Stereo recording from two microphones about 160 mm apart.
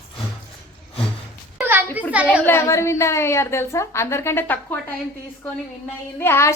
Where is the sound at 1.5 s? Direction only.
10° right (ahead or behind).